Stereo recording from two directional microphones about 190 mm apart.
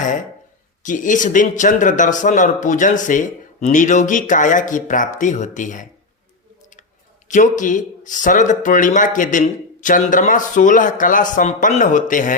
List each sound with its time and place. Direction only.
0.0 s a sound: 40° left (ahead or behind)
0.8 s speech: 40° left (ahead or behind)
7.3 s speech: 40° left (ahead or behind)